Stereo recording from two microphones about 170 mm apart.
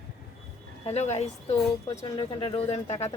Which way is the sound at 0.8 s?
40° left (ahead or behind).